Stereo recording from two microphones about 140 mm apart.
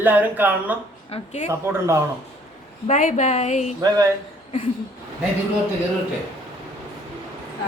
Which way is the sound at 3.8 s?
25° right (ahead or behind).